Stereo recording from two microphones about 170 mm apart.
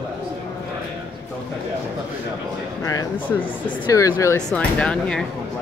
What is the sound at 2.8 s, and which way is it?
Speech, 20° left (ahead or behind).